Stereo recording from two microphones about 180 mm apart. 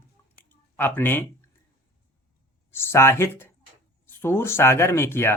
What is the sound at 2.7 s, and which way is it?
Speech, 15° left (ahead or behind).